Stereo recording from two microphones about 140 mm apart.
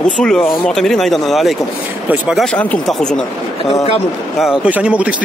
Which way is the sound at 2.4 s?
10° left (ahead or behind).